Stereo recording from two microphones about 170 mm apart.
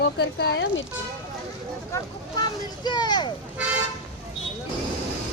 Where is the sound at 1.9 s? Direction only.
20° left (ahead or behind).